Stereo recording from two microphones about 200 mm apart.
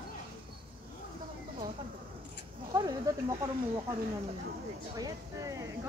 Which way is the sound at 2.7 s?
15° right (ahead or behind).